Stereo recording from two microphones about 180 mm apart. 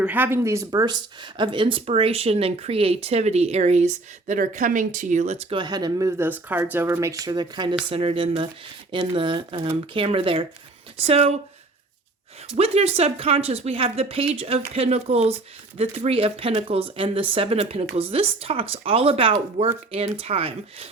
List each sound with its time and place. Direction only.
0.0 s speech: 10° right (ahead or behind); by 11.3 s 35° right (ahead or behind)
12.5 s speech: 35° right (ahead or behind)